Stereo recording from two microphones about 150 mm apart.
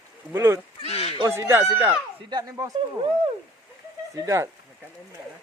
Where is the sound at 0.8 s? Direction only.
40° left (ahead or behind).